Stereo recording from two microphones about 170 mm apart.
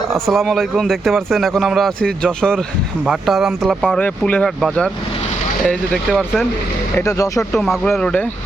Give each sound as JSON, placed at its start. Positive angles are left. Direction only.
{"t": 0.1, "sound": "a man's voice", "side_deg": 0}
{"t": 6.9, "sound": "speech", "side_deg": 20}
{"t": 7.9, "sound": "speech", "side_deg": 5}